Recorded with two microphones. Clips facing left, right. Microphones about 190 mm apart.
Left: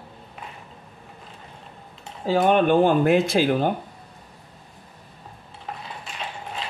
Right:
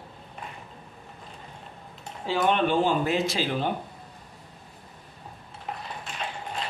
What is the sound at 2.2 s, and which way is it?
Speech, 45° left (ahead or behind).